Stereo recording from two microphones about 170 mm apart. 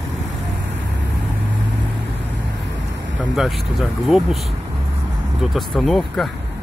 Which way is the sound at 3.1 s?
90° right.